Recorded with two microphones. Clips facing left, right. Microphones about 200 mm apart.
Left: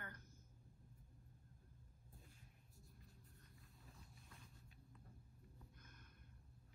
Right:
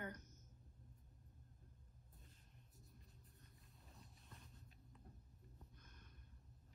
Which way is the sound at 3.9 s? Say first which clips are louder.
Right 1 dB; centre (ahead or behind).